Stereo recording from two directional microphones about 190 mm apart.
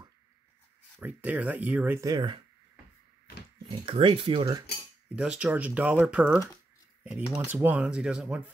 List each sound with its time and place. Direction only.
1.0 s speech: 10° right (ahead or behind); by 2.4 s 25° right (ahead or behind)
3.8 s speech: 30° right (ahead or behind)
5.1 s speech: 5° right (ahead or behind)